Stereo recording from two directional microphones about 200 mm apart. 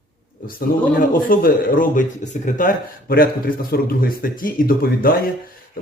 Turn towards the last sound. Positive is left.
turn(degrees=45)  # may be behind; listen again after turning